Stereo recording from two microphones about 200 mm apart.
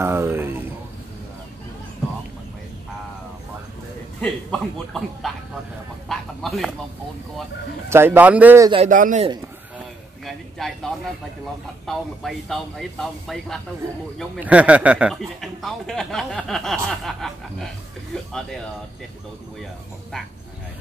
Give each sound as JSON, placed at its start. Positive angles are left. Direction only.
{"t": 0.0, "sound": "a man's voice", "side_deg": -10}
{"t": 4.2, "sound": "speech", "side_deg": 5}
{"t": 7.9, "sound": "a man's voice", "side_deg": -10}
{"t": 8.6, "sound": "a man's voice", "side_deg": -30}
{"t": 8.9, "sound": "a man's voice", "side_deg": -40}
{"t": 10.2, "sound": "a sound", "side_deg": 0}
{"t": 11.8, "sound": "speech", "side_deg": 0}